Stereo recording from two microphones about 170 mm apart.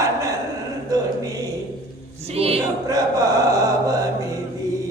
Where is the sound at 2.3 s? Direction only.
35° right (ahead or behind).